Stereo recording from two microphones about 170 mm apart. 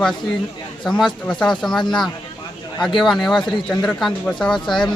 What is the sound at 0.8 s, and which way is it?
Speech, centre (ahead or behind).